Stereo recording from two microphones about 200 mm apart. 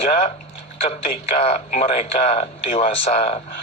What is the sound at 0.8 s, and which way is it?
Speech, 30° left (ahead or behind).